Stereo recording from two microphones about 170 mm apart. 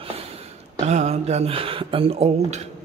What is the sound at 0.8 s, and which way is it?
Speech, 40° right (ahead or behind).